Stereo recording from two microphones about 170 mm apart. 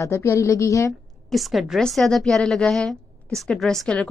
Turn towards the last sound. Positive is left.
turn(degrees=5)  # may be behind; listen again after turning